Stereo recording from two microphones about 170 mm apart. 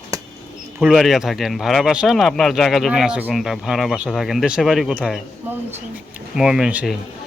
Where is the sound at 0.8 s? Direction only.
5° right (ahead or behind).